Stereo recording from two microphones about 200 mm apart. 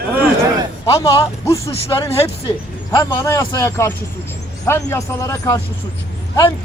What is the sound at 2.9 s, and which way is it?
A man's voice, 20° left (ahead or behind).